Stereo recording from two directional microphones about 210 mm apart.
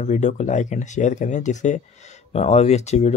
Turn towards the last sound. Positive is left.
turn(degrees=30)  # may be behind; listen again after turning